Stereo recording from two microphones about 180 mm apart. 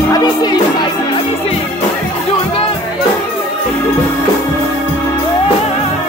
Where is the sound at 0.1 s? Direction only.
25° left (ahead or behind).